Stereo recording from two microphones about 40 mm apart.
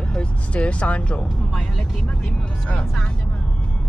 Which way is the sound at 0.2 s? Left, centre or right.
Left.